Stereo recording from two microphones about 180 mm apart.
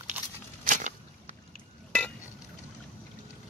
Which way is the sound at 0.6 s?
45° right (ahead or behind).